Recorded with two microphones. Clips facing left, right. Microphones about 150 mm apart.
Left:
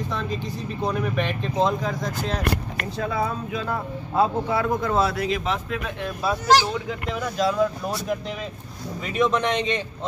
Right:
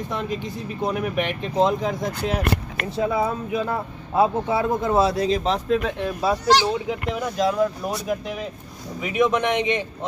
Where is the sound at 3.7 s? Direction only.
20° right (ahead or behind).